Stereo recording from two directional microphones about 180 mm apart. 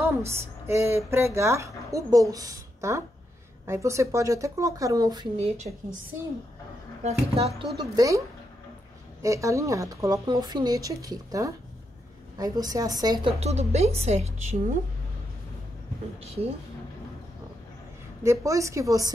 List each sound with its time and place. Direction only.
0.2 s speech: 15° right (ahead or behind)
7.0 s speech: 35° right (ahead or behind)
7.9 s speech: 20° right (ahead or behind)
9.2 s speech: 15° right (ahead or behind)
13.4 s speech: 35° right (ahead or behind)
16.2 s speech: 35° right (ahead or behind)
18.2 s speech: 15° right (ahead or behind)